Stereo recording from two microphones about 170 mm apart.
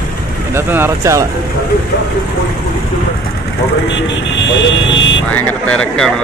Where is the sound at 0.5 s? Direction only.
15° right (ahead or behind).